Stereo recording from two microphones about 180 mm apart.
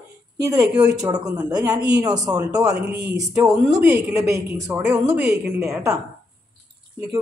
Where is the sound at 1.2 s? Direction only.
20° right (ahead or behind).